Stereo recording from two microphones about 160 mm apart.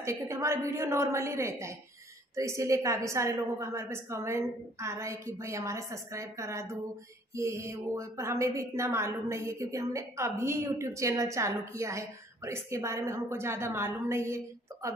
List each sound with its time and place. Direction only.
0.0 s a woman's voice: 15° right (ahead or behind)